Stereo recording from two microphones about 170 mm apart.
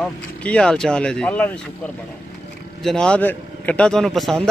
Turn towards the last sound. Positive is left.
turn(degrees=0)  # may be behind; listen again after turning